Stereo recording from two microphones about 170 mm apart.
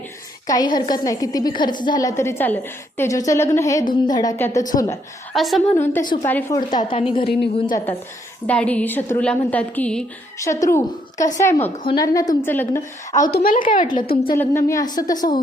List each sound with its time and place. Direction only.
0.4 s a woman's voice: 20° left (ahead or behind)
5.3 s a woman's voice: centre (ahead or behind)
5.7 s a woman's voice: 15° left (ahead or behind)
6.7 s a woman's voice: 30° left (ahead or behind)
7.3 s a woman's voice: 65° left (ahead or behind)
8.4 s a woman's voice: 5° left (ahead or behind)
10.4 s a woman's voice: 20° left (ahead or behind)
13.2 s speech: 55° left (ahead or behind)
14.3 s a woman's voice: 15° left (ahead or behind)